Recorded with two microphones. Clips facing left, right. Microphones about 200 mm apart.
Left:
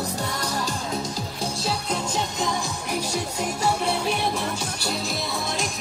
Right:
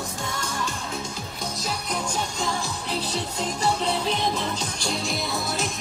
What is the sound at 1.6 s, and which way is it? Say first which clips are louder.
Music: left 1 dB; 25° left (ahead or behind).